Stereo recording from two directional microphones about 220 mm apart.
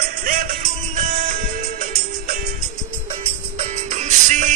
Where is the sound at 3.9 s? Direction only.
30° right (ahead or behind).